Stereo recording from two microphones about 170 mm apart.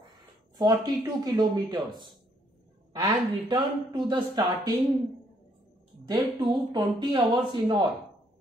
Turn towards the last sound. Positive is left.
turn(degrees=-25)  # may be behind; listen again after turning